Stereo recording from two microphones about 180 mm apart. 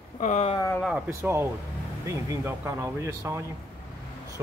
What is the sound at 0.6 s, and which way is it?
Speech, 15° left (ahead or behind).